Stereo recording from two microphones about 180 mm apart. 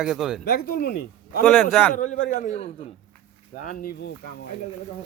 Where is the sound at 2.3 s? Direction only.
40° left (ahead or behind).